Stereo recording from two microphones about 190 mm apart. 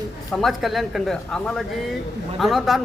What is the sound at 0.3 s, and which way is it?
Speech, centre (ahead or behind).